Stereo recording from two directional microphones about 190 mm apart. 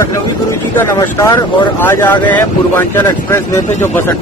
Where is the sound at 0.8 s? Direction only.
15° left (ahead or behind).